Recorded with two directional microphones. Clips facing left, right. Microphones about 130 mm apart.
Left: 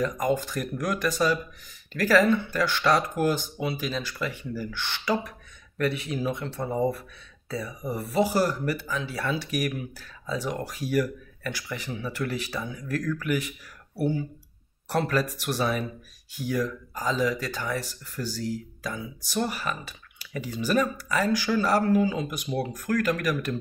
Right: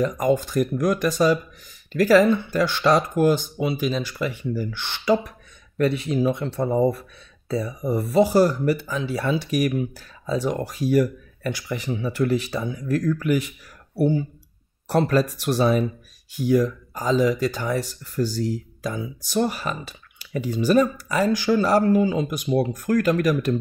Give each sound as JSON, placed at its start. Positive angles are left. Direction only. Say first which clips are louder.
{"t": 0.0, "sound": "speech", "louder": "right 5 dB", "side_deg": -20}